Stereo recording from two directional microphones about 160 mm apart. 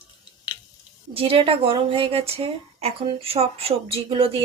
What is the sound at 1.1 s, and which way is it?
A woman's voice, 35° right (ahead or behind).